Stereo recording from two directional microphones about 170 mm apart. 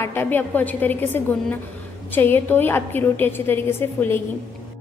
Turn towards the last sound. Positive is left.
turn(degrees=15)  # may be behind; listen again after turning